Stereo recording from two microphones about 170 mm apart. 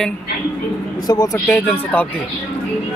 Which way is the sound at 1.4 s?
10° left (ahead or behind).